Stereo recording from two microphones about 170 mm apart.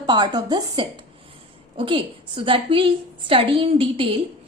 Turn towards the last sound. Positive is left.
turn(degrees=-30)  # may be behind; listen again after turning